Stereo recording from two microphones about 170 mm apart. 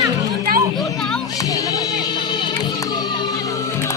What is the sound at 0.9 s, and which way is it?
Music, centre (ahead or behind).